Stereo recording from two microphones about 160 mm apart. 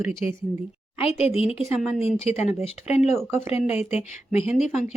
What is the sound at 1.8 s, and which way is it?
Speech, centre (ahead or behind).